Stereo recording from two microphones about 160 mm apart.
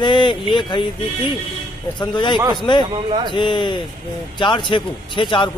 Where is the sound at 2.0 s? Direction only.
30° left (ahead or behind).